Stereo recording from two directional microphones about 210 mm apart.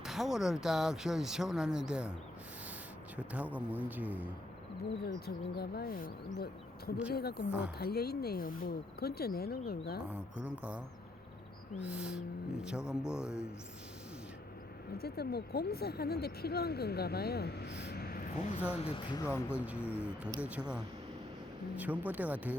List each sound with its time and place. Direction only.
0.0 s speech: centre (ahead or behind)
3.2 s a man's voice: 5° right (ahead or behind)
5.0 s speech: 50° left (ahead or behind)
10.3 s speech: 5° right (ahead or behind)
14.9 s speech: 50° left (ahead or behind)
18.8 s speech: 25° left (ahead or behind)
19.5 s speech: 5° right (ahead or behind)
19.9 s speech: 10° left (ahead or behind)
20.3 s a man's voice: 5° right (ahead or behind)
22.0 s a man's voice: 5° right (ahead or behind)